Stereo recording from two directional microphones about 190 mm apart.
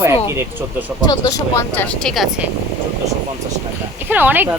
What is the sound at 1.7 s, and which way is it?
Speech, 10° left (ahead or behind).